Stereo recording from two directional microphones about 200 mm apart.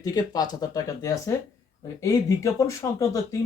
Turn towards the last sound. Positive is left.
turn(degrees=15)  # may be behind; listen again after turning